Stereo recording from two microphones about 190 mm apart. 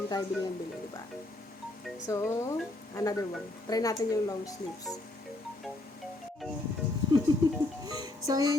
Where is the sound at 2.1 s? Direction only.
15° left (ahead or behind).